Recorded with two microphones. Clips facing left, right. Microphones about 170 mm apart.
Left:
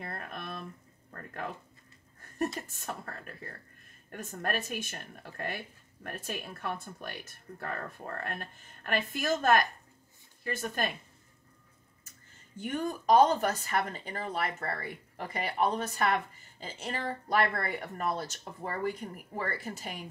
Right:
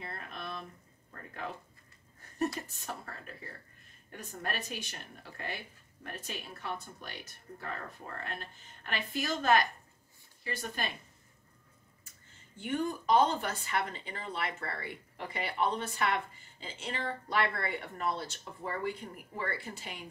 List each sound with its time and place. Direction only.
0.0 s a sound: 50° left (ahead or behind)
2.7 s speech: 50° left (ahead or behind)
12.5 s speech: 45° left (ahead or behind)